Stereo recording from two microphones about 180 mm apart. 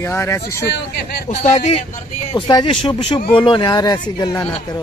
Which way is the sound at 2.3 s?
25° left (ahead or behind).